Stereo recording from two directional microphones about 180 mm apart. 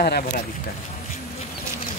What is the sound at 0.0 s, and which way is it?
Speech, 60° left (ahead or behind).